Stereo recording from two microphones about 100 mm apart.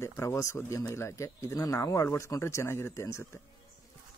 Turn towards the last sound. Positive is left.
turn(degrees=30)  # may be behind; listen again after turning